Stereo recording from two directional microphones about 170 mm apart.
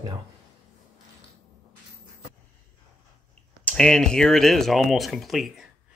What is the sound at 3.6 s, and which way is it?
Speech, 5° left (ahead or behind).